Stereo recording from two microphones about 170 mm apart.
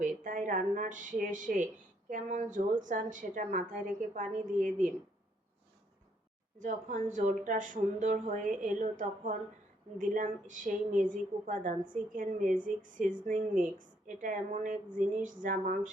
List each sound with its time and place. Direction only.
0.0 s a woman's voice: 50° right (ahead or behind)
6.6 s a woman's voice: 50° right (ahead or behind)